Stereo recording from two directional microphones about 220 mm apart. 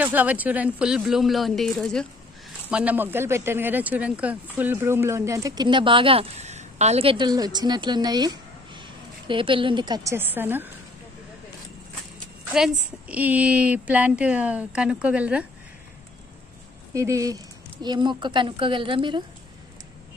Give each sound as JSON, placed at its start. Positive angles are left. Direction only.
{"t": 0.0, "sound": "a woman's voice", "side_deg": -5}
{"t": 12.5, "sound": "a woman's voice", "side_deg": -5}
{"t": 16.9, "sound": "a woman's voice", "side_deg": -15}